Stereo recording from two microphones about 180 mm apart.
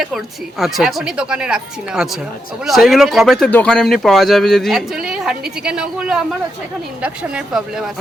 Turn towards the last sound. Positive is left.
turn(degrees=-5)  # may be behind; listen again after turning